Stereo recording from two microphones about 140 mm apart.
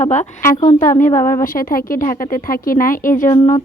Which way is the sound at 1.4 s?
80° left.